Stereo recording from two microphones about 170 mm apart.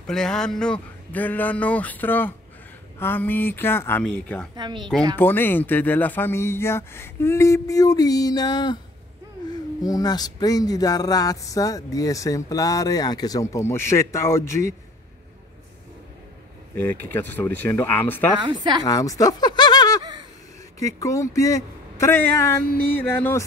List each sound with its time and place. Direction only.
0.0 s speech: 5° left (ahead or behind)
4.6 s a woman's voice: 25° right (ahead or behind)
5.1 s speech: 10° left (ahead or behind)
16.7 s speech: 10° left (ahead or behind)
18.4 s a woman's voice: 25° right (ahead or behind)
18.9 s a sound: 20° left (ahead or behind)
20.8 s speech: 20° left (ahead or behind)